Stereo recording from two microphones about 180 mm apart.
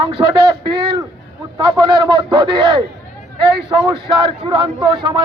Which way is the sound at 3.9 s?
30° right (ahead or behind).